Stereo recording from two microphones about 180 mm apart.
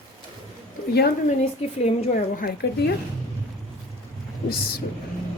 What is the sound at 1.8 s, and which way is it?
A woman's voice, 45° left (ahead or behind).